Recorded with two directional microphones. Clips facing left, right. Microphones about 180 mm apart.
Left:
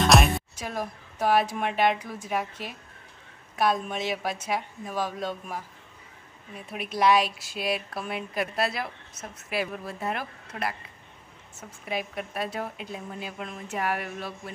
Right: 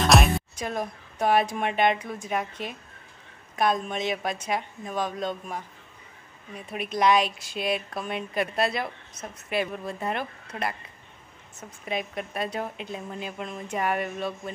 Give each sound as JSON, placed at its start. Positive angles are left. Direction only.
{"t": 0.0, "sound": "speech", "side_deg": 0}
{"t": 11.8, "sound": "speech", "side_deg": 5}